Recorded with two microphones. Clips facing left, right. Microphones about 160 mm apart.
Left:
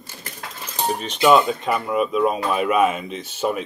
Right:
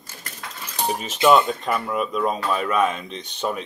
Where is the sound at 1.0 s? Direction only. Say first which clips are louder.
Left 1 dB; 5° right (ahead or behind).